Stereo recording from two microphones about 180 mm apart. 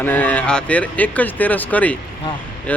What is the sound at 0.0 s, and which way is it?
Speech, 10° left (ahead or behind).